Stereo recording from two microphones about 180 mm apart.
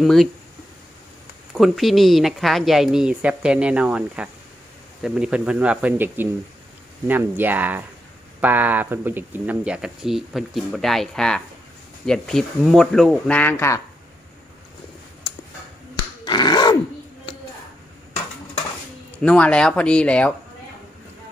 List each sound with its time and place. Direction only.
0.0 s speech: centre (ahead or behind)
1.5 s speech: centre (ahead or behind); by 13.8 s 15° left (ahead or behind)
16.3 s a sound: 25° left (ahead or behind)
19.1 s speech: 5° left (ahead or behind)